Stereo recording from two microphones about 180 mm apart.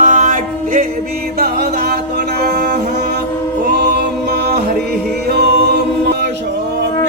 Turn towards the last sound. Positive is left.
turn(degrees=-60)  # may be behind; listen again after turning